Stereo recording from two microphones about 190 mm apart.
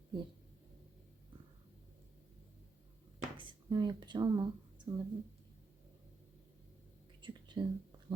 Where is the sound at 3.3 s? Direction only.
25° right (ahead or behind).